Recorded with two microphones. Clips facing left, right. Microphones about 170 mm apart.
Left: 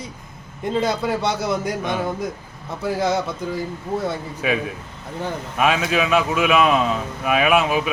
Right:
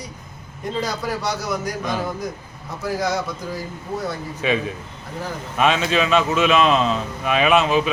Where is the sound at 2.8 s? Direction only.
25° left (ahead or behind).